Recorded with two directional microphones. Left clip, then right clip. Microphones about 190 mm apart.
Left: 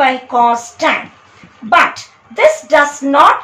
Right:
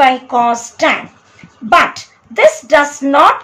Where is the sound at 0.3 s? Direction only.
35° right (ahead or behind).